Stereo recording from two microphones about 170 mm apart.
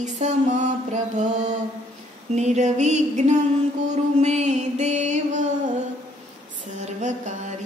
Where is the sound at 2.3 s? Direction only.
40° right (ahead or behind).